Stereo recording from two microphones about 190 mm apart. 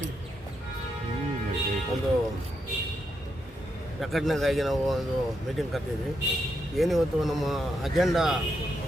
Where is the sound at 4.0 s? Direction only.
Centre (ahead or behind).